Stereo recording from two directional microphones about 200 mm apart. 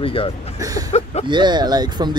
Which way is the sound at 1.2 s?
20° right (ahead or behind).